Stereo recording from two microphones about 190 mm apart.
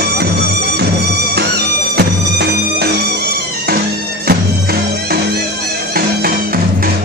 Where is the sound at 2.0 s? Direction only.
55° right (ahead or behind).